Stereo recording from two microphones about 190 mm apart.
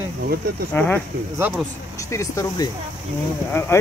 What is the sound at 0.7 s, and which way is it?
Speech, 10° left (ahead or behind).